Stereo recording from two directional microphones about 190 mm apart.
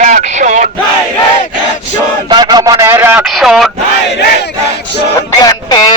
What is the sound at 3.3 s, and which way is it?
Speech, centre (ahead or behind).